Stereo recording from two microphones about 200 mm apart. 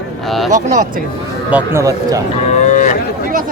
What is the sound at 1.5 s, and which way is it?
Speech, 10° right (ahead or behind).